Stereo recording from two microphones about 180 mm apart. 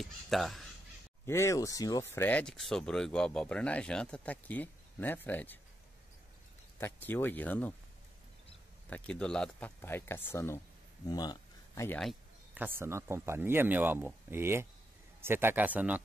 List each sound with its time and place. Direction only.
0.0 s speech: centre (ahead or behind)
1.2 s speech: 15° left (ahead or behind)
6.8 s speech: 10° left (ahead or behind)
8.9 s speech: 5° left (ahead or behind)
12.5 s speech: 10° right (ahead or behind)